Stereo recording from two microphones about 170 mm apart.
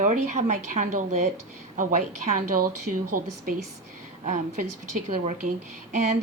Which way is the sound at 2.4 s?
55° right (ahead or behind).